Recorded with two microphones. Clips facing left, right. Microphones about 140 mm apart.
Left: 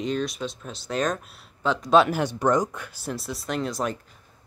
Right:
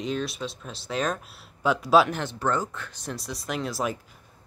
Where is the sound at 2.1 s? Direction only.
15° left (ahead or behind).